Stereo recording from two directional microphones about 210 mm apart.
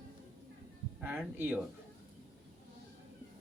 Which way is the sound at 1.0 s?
5° right (ahead or behind).